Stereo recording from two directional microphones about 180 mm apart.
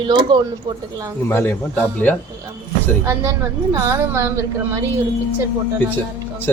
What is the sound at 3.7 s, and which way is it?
A woman's voice, 15° right (ahead or behind).